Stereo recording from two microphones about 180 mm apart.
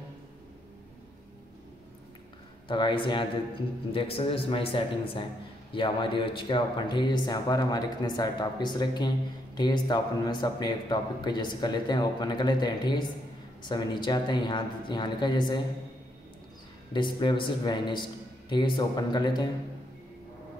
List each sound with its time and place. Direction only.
2.7 s speech: 25° left (ahead or behind)
16.9 s speech: 25° left (ahead or behind)